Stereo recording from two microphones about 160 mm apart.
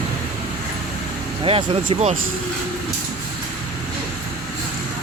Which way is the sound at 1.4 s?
35° right (ahead or behind).